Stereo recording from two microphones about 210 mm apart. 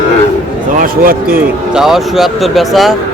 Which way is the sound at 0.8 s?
40° right (ahead or behind).